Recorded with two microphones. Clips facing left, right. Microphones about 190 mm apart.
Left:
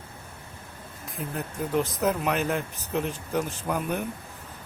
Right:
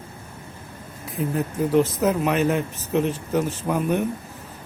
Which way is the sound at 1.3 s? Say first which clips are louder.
Right 7 dB; centre (ahead or behind).